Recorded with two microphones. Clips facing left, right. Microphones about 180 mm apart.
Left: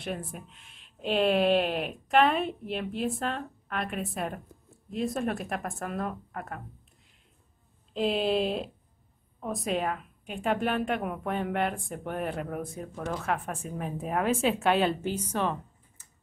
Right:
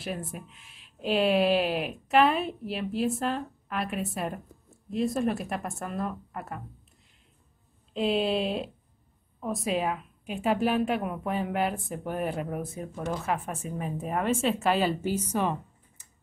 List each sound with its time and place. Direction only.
0.0 s a woman's voice: centre (ahead or behind)
7.9 s a woman's voice: centre (ahead or behind)